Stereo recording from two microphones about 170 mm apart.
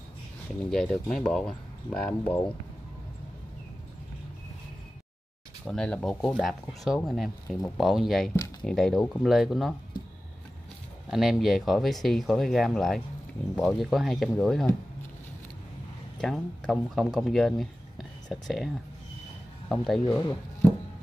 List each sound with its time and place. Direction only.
0.7 s speech: 5° left (ahead or behind)
5.7 s speech: 5° left (ahead or behind)
11.1 s speech: centre (ahead or behind)
16.2 s speech: 5° left (ahead or behind)
19.7 s speech: centre (ahead or behind)
20.1 s speech: 20° left (ahead or behind)